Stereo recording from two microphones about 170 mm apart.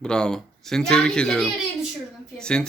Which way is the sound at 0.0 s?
5° left (ahead or behind).